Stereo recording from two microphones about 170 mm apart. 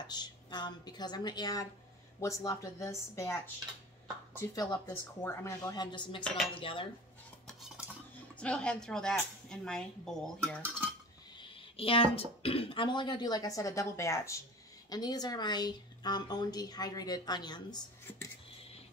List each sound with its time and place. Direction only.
0.0 s a woman's voice: 25° left (ahead or behind)
7.4 s cutlery: 5° right (ahead or behind)
8.4 s a woman's voice: 5° left (ahead or behind)
11.4 s a woman's voice: 35° left (ahead or behind)